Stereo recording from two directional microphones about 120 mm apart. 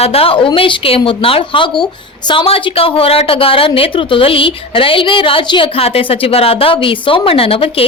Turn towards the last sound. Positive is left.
turn(degrees=50)  # may be behind; listen again after turning